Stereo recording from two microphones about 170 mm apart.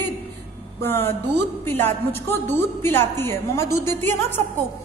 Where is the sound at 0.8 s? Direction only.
15° left (ahead or behind).